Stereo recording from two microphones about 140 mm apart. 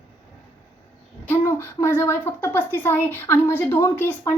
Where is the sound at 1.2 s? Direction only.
20° left (ahead or behind).